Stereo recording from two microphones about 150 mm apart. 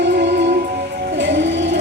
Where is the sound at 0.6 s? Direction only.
90° right.